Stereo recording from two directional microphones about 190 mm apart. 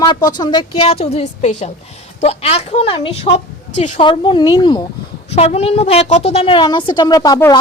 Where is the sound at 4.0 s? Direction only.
25° left (ahead or behind).